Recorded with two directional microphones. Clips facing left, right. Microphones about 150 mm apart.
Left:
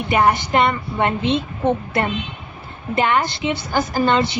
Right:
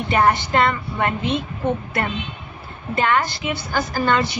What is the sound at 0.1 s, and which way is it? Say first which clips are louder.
A woman's voice: left 1 dB; 15° left (ahead or behind).